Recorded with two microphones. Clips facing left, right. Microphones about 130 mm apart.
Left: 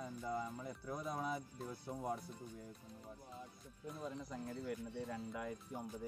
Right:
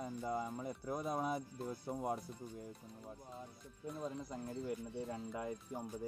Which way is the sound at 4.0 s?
25° right (ahead or behind).